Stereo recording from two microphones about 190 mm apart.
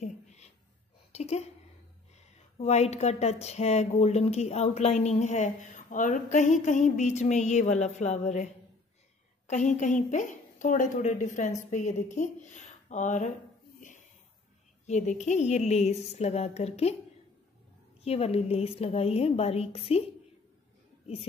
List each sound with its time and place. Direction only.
0.0 s a sound: 35° left (ahead or behind)
1.1 s a woman's voice: 35° left (ahead or behind)
9.5 s speech: 40° left (ahead or behind)
14.9 s speech: 40° left (ahead or behind)
18.0 s speech: 30° left (ahead or behind)